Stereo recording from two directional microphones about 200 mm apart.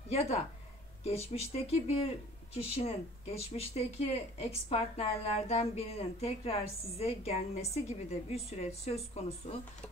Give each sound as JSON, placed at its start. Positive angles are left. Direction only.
{"t": 0.1, "sound": "speech", "side_deg": 30}